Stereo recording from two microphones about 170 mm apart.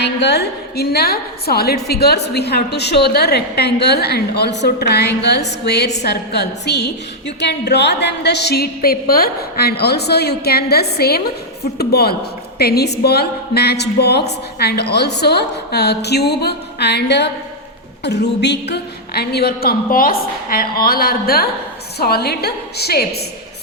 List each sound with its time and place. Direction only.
0.0 s a woman's voice: 80° left